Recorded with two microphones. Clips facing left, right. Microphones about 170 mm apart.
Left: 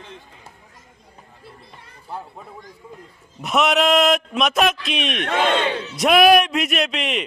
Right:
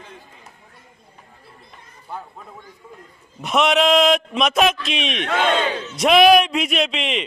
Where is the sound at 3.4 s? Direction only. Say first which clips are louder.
Right 1 dB; centre (ahead or behind).